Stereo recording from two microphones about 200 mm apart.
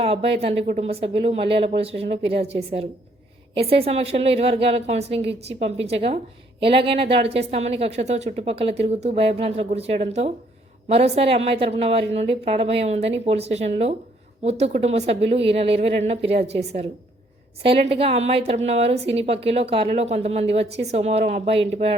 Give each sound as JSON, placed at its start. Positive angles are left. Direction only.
{"t": 0.0, "sound": "a woman's voice", "side_deg": -30}